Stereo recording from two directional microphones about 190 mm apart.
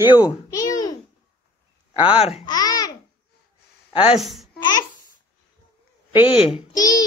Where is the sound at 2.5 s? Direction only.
20° left (ahead or behind).